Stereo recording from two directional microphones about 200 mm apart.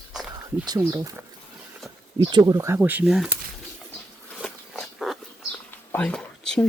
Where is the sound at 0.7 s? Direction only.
15° right (ahead or behind).